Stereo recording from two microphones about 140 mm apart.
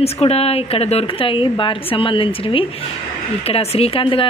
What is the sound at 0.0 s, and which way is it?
A woman's voice, 45° left (ahead or behind).